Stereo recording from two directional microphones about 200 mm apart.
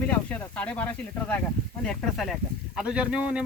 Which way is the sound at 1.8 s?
Centre (ahead or behind).